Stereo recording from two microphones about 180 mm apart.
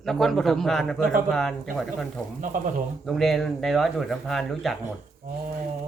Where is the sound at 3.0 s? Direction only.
Centre (ahead or behind).